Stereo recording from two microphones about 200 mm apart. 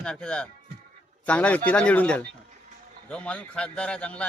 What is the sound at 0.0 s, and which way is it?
Speech, 5° left (ahead or behind).